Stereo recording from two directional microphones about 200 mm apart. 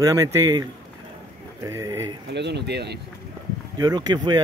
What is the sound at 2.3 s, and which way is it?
Speech, 60° right (ahead or behind).